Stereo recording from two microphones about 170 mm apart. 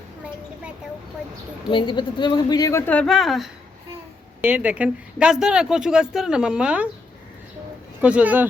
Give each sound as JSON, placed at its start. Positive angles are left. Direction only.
{"t": 1.7, "sound": "a woman's voice", "side_deg": 30}
{"t": 8.0, "sound": "speech", "side_deg": -10}